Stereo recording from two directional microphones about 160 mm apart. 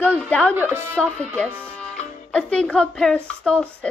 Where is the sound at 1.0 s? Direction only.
5° left (ahead or behind).